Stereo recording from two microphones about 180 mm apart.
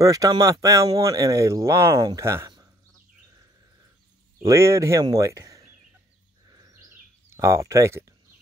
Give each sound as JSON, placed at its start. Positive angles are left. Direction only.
{"t": 0.0, "sound": "speech", "side_deg": -20}
{"t": 4.4, "sound": "speech", "side_deg": -15}
{"t": 6.5, "sound": "a sound", "side_deg": -20}